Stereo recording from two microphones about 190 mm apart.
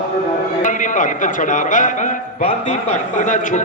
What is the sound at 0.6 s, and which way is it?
A man's voice, 40° left (ahead or behind).